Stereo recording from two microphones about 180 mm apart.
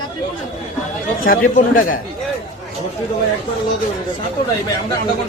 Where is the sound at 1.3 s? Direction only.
50° left (ahead or behind).